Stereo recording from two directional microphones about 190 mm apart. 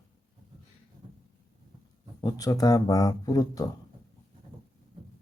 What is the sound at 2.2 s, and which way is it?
A man's voice, 20° left (ahead or behind).